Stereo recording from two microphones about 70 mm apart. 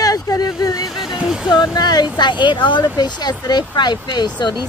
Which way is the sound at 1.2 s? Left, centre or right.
Centre.